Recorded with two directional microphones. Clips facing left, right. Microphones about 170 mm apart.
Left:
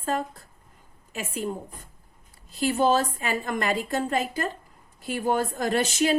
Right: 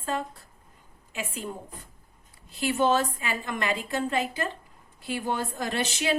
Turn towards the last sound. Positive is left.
turn(degrees=40)  # may be behind; listen again after turning